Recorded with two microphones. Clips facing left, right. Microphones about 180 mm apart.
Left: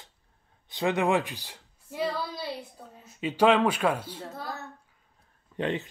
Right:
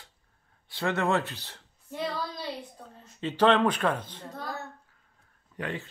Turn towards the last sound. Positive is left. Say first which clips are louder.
# left 6 dB
turn(degrees=25)  # may be behind; listen again after turning